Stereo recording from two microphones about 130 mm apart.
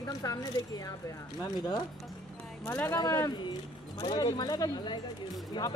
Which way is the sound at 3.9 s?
40° left (ahead or behind).